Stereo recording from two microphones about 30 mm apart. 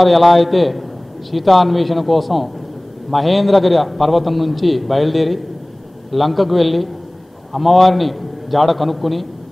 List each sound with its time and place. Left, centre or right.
0.0 s a man's voice: centre